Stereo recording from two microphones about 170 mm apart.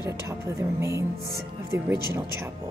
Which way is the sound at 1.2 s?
65° right (ahead or behind).